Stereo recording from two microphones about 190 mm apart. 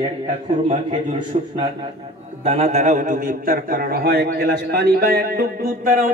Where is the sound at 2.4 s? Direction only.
30° right (ahead or behind).